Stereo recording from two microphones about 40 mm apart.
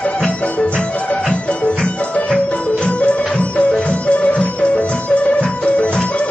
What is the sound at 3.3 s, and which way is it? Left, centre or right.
Music, centre.